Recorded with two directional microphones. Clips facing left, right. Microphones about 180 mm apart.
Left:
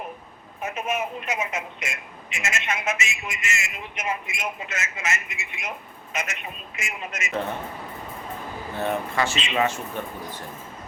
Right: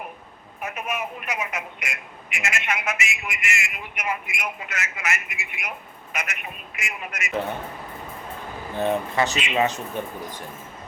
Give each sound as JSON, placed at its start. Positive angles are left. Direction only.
{"t": 0.6, "sound": "speech", "side_deg": 25}
{"t": 8.7, "sound": "speech", "side_deg": -20}